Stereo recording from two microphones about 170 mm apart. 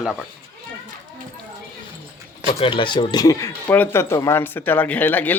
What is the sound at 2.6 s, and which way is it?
Speech, 30° left (ahead or behind).